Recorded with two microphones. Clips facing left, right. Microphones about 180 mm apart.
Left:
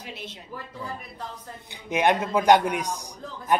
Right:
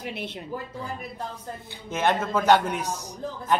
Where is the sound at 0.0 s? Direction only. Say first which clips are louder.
Right 5 dB; 60° right (ahead or behind).